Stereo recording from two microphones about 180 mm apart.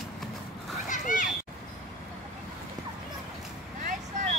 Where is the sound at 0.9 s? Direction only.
45° left (ahead or behind).